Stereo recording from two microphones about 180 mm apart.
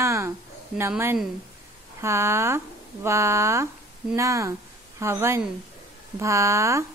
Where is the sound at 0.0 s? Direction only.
15° right (ahead or behind).